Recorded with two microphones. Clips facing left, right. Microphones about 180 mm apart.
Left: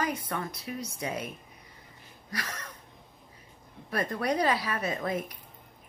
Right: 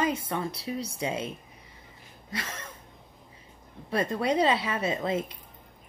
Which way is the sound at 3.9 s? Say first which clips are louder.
Right 3 dB; 25° right (ahead or behind).